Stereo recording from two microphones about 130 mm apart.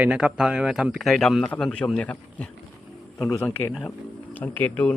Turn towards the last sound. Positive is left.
turn(degrees=15)  # may be behind; listen again after turning